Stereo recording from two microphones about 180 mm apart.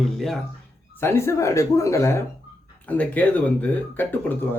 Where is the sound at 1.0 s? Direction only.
15° left (ahead or behind).